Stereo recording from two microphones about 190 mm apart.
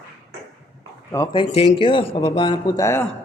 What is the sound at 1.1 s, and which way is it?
A man's voice, 20° left (ahead or behind).